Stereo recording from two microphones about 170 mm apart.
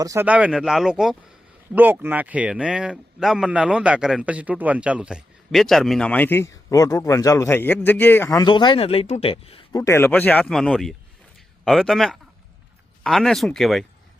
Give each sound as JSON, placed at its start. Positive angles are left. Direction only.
{"t": 0.0, "sound": "speech", "side_deg": -20}
{"t": 0.3, "sound": "speech", "side_deg": -5}
{"t": 9.7, "sound": "speech", "side_deg": 15}